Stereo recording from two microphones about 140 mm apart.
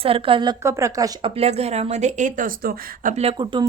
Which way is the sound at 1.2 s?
45° right (ahead or behind).